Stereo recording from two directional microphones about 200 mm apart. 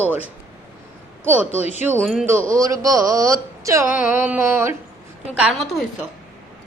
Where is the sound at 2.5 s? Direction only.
15° right (ahead or behind); by 5.8 s centre (ahead or behind).